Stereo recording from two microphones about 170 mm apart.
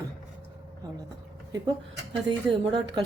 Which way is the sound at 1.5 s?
25° right (ahead or behind).